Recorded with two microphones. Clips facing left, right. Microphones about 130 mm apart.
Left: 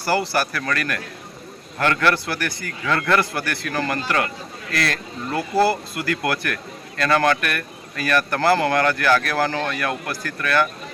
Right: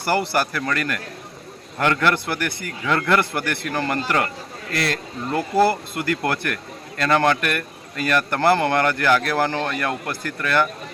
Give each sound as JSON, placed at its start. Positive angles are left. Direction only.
{"t": 0.0, "sound": "speech", "side_deg": -20}